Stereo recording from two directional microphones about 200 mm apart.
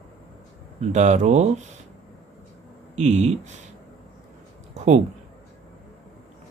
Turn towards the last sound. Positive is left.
turn(degrees=-35)  # may be behind; listen again after turning